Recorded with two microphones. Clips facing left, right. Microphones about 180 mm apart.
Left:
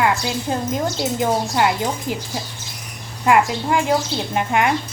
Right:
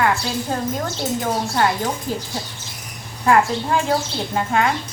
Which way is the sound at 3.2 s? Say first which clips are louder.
Even; 15° left (ahead or behind).